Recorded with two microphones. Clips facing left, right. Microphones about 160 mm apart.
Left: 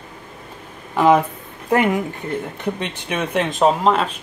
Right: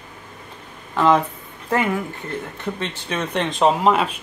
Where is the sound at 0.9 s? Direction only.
10° left (ahead or behind).